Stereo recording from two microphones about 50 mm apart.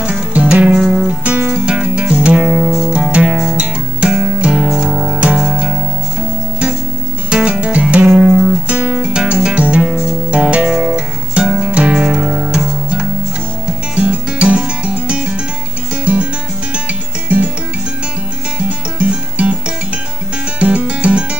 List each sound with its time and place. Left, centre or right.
0.3 s music: right
7.2 s music: right
9.1 s music: centre
11.4 s music: centre
11.7 s music: right
13.9 s music: right
18.6 s music: right